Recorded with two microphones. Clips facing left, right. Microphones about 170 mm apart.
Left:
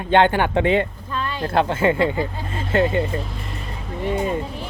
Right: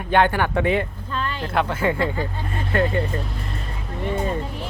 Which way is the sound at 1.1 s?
15° left (ahead or behind).